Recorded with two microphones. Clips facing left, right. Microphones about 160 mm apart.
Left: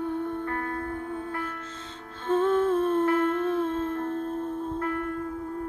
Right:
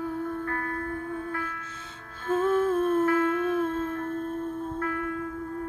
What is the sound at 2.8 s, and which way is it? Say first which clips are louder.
Humming: even; 30° left (ahead or behind).